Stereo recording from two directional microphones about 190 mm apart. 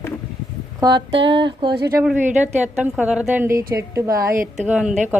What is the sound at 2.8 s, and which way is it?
Speech, 5° right (ahead or behind).